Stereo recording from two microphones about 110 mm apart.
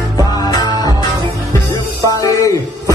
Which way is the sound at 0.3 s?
35° left (ahead or behind).